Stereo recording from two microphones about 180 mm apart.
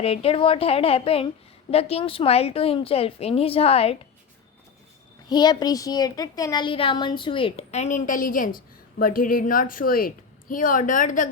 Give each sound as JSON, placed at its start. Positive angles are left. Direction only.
{"t": 0.0, "sound": "a woman's voice", "side_deg": 30}
{"t": 5.3, "sound": "a woman's voice", "side_deg": 25}